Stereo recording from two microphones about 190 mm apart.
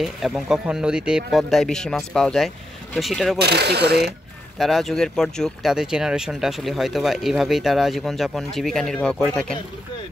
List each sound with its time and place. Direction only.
0.0 s speech: centre (ahead or behind)
3.3 s speech: 60° right (ahead or behind)
4.6 s speech: centre (ahead or behind)